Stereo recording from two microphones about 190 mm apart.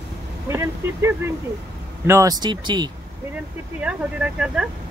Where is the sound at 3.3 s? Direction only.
10° right (ahead or behind).